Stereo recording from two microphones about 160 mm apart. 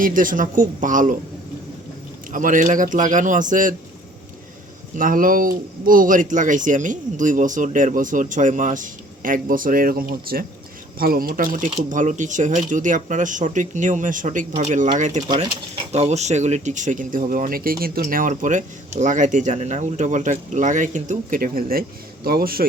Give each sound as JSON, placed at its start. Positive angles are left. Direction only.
{"t": 0.0, "sound": "speech", "side_deg": -55}
{"t": 2.3, "sound": "speech", "side_deg": -55}
{"t": 4.9, "sound": "speech", "side_deg": -60}
{"t": 15.3, "sound": "speech", "side_deg": -25}
{"t": 15.9, "sound": "speech", "side_deg": -45}